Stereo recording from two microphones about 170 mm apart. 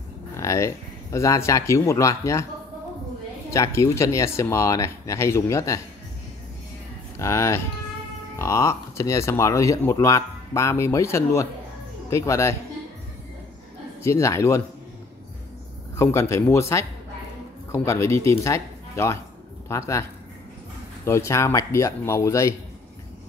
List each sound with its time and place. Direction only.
0.4 s speech: 15° left (ahead or behind)
3.4 s speech: 15° left (ahead or behind)
7.2 s speech: 15° left (ahead or behind)
14.0 s speech: 15° left (ahead or behind)
16.0 s speech: 15° left (ahead or behind)